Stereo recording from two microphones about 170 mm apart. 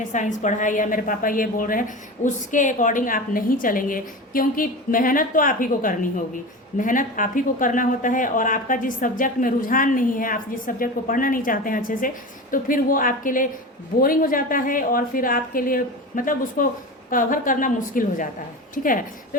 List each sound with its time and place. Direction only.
0.1 s a woman's voice: 45° left (ahead or behind)